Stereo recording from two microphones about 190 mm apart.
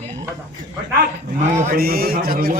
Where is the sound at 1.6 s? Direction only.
50° right (ahead or behind).